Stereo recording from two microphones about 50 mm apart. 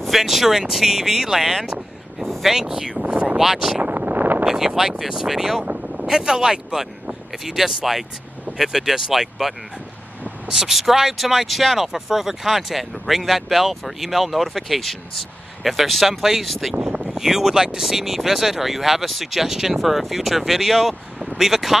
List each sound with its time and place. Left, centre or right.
0.0 s speech: centre
2.2 s a sound: centre
2.5 s speech: centre
3.0 s a sound: right
3.3 s speech: centre
3.8 s vehicle: right
4.5 s speech: centre
17.0 s speech: centre